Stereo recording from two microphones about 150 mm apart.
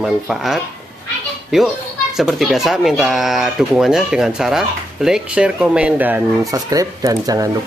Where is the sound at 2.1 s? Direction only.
Centre (ahead or behind).